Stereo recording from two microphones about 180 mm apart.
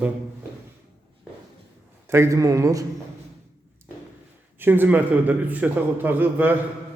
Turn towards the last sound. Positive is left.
turn(degrees=-10)  # may be behind; listen again after turning